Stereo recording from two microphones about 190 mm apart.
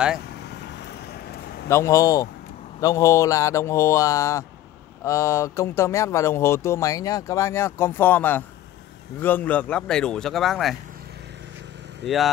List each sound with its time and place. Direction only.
1.7 s speech: 15° left (ahead or behind); by 10.8 s centre (ahead or behind)
12.0 s speech: centre (ahead or behind)